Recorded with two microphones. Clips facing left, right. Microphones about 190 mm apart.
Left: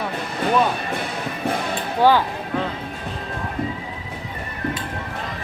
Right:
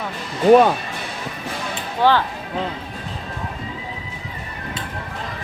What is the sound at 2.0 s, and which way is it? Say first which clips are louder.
Speech: left 1 dB; 10° left (ahead or behind).